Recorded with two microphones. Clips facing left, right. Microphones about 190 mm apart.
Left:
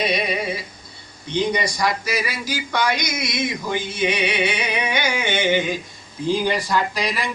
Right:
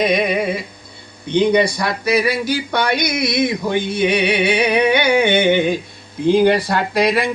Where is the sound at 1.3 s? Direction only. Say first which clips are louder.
Right 8 dB; 60° right (ahead or behind).